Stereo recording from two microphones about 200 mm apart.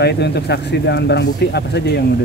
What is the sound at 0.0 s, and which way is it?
Speech, 55° left (ahead or behind).